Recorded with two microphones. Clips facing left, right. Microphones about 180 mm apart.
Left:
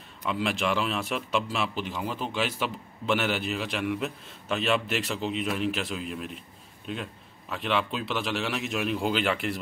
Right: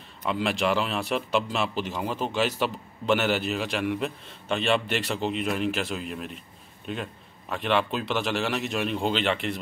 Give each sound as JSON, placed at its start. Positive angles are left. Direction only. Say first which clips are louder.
{"t": 0.3, "sound": "a man's voice", "louder": "right 2 dB", "side_deg": 0}
{"t": 0.6, "sound": "speech", "louder": "right 4 dB", "side_deg": -35}
{"t": 0.8, "sound": "a man's voice", "louder": "right 2 dB", "side_deg": 0}
{"t": 2.0, "sound": "speech", "louder": "right 3 dB", "side_deg": -40}
{"t": 2.3, "sound": "a man's voice", "louder": "right 5 dB", "side_deg": 0}
{"t": 7.5, "sound": "a man's voice", "louder": "right 3 dB", "side_deg": 0}